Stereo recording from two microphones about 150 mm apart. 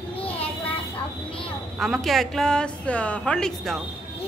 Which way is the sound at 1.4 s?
Centre (ahead or behind).